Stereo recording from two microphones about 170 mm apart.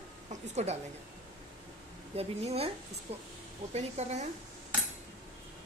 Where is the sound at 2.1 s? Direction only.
35° right (ahead or behind).